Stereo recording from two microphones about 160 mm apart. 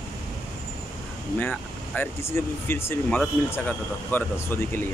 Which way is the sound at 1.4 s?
10° left (ahead or behind).